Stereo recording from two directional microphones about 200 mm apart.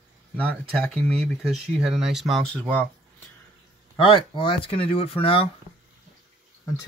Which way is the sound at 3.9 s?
25° left (ahead or behind).